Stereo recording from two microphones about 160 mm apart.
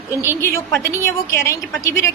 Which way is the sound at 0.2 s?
15° left (ahead or behind).